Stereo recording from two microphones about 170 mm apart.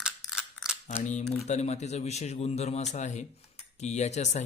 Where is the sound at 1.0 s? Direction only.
45° left (ahead or behind).